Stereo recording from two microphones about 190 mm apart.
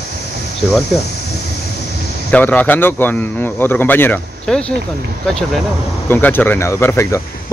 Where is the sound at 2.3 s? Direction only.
5° left (ahead or behind).